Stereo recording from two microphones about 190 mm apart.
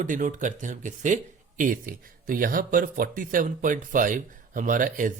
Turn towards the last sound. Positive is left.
turn(degrees=-45)  # may be behind; listen again after turning